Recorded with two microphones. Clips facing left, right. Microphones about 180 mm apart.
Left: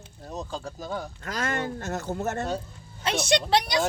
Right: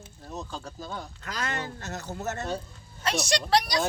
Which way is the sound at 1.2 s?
45° left (ahead or behind).